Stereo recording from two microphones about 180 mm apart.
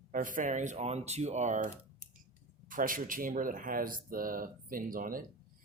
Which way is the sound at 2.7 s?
50° right (ahead or behind).